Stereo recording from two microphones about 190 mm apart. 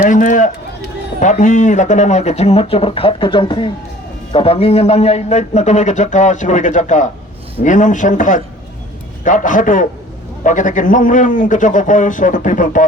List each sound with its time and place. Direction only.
0.0 s run: 45° left (ahead or behind)
1.2 s a man's voice: 40° left (ahead or behind)